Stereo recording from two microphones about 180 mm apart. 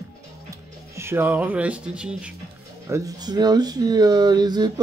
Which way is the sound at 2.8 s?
20° right (ahead or behind).